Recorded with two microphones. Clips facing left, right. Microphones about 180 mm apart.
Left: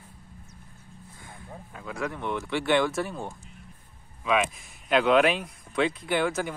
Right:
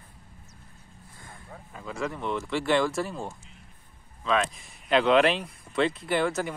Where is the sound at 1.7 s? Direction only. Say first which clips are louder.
Even; centre (ahead or behind).